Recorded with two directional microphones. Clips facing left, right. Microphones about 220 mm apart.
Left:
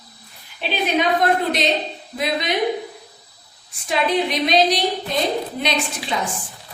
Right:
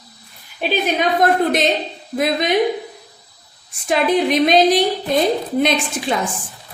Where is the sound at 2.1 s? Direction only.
50° right (ahead or behind).